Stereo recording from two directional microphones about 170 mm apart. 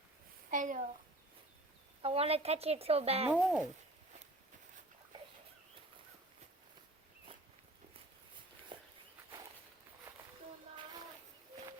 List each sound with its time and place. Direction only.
0.5 s a child's voice: 50° right (ahead or behind)
2.0 s speech: 35° right (ahead or behind)
3.2 s speech: 5° right (ahead or behind)
8.7 s walk: 30° right (ahead or behind)